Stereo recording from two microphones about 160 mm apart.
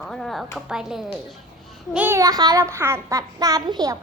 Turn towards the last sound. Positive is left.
turn(degrees=-25)  # may be behind; listen again after turning